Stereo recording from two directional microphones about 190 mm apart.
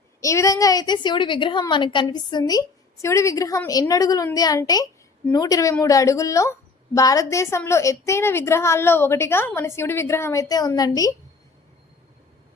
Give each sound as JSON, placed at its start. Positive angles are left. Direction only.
{"t": 0.2, "sound": "a woman's voice", "side_deg": 15}